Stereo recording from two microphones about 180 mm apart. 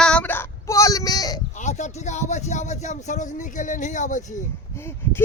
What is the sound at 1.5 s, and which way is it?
Speech, 40° left (ahead or behind).